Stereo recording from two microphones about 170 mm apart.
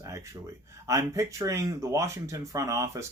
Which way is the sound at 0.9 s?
20° right (ahead or behind).